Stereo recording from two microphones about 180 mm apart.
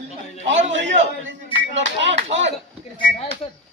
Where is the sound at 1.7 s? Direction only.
90° right.